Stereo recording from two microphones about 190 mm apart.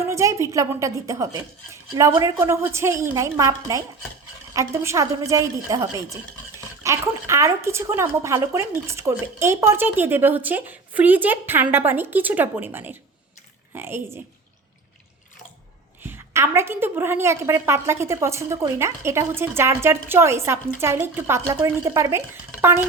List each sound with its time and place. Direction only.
0.0 s speech: 15° right (ahead or behind)
16.0 s speech: 10° right (ahead or behind)